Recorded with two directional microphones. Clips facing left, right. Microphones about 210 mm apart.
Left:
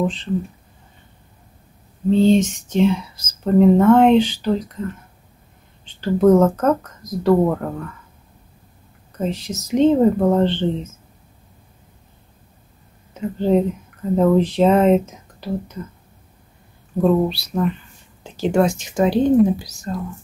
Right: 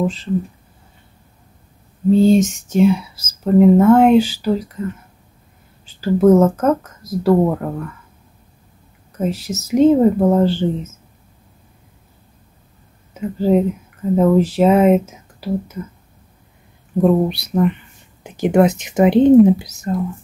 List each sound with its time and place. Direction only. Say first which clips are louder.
0.0 s speech: right 1 dB; 5° right (ahead or behind)
2.0 s speech: right 2 dB; 10° right (ahead or behind)
5.9 s speech: right 2 dB; 5° right (ahead or behind)
9.2 s speech: right 3 dB; 5° right (ahead or behind)
13.1 s speech: right 2 dB; 5° right (ahead or behind)
17.0 s speech: right 2 dB; 20° right (ahead or behind)